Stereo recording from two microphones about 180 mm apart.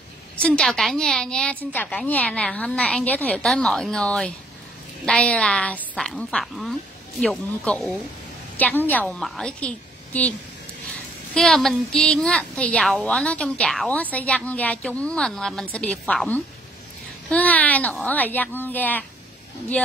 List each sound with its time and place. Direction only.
0.4 s speech: 5° left (ahead or behind)